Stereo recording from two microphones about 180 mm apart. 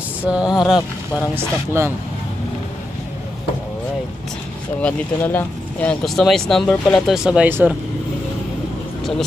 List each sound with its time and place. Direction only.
0.2 s speech: 5° right (ahead or behind)
1.3 s speech: 15° right (ahead or behind)
4.8 s speech: 10° left (ahead or behind); by 7.7 s 10° right (ahead or behind)